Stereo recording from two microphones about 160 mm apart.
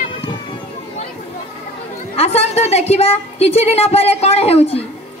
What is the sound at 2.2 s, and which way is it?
A woman's voice, 40° left (ahead or behind).